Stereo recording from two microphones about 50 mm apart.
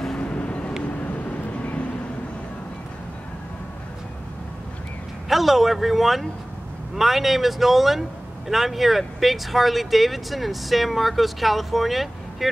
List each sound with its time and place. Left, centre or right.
0.2 s vehicle: left
5.3 s speech: centre